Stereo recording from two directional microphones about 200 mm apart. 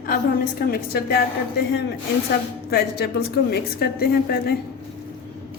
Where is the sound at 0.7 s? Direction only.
55° left (ahead or behind).